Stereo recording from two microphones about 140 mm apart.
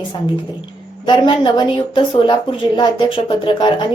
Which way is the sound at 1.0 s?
35° left (ahead or behind).